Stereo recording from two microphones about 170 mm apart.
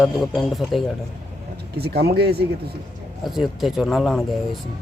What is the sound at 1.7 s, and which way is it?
Speech, 70° right (ahead or behind).